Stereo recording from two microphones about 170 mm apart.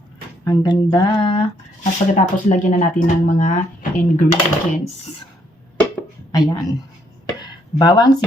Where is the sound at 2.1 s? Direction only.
45° left (ahead or behind).